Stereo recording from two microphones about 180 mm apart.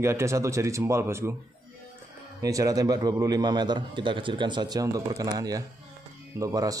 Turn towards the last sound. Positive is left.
turn(degrees=-20)  # may be behind; listen again after turning